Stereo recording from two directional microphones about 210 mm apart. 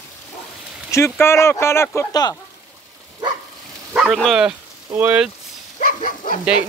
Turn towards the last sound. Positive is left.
turn(degrees=40)  # may be behind; listen again after turning